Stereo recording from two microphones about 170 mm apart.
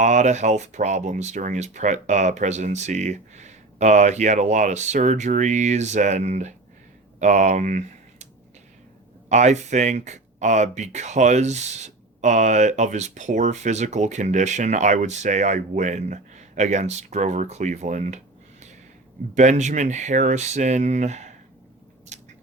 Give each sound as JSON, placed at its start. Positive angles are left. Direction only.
{"t": 0.0, "sound": "speech", "side_deg": -45}
{"t": 9.3, "sound": "speech", "side_deg": -45}
{"t": 19.3, "sound": "speech", "side_deg": -45}
{"t": 22.1, "sound": "a sound", "side_deg": -45}